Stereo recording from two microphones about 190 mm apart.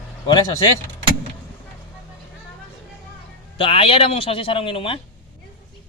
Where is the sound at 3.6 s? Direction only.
30° left (ahead or behind).